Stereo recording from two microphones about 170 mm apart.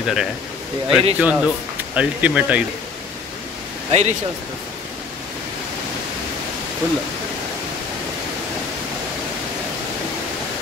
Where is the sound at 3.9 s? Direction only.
40° right (ahead or behind).